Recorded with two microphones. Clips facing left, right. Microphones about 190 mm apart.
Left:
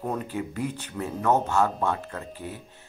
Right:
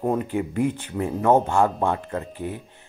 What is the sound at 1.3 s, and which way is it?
Speech, 50° right (ahead or behind).